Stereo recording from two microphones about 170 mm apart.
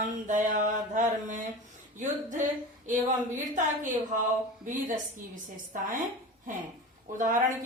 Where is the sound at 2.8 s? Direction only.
50° right (ahead or behind).